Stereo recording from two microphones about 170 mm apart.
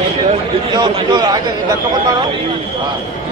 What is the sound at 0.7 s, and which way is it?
Speech, 25° right (ahead or behind).